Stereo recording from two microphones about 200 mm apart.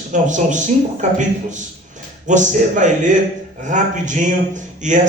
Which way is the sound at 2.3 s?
40° right (ahead or behind).